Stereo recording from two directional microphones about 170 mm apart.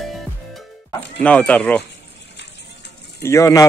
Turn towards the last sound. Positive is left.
turn(degrees=20)  # may be behind; listen again after turning